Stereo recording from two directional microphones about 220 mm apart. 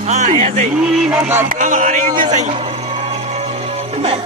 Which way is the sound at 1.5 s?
35° right (ahead or behind).